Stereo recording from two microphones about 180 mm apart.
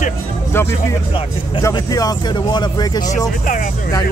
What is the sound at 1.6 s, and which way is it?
A man's voice, 20° left (ahead or behind).